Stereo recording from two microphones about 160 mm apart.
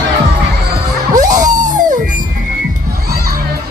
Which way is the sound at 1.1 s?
55° right (ahead or behind).